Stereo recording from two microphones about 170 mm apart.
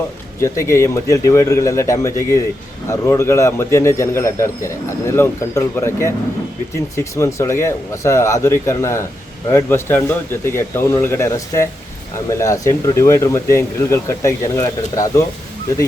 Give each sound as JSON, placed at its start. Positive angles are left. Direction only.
{"t": 0.3, "sound": "a man's voice", "side_deg": 15}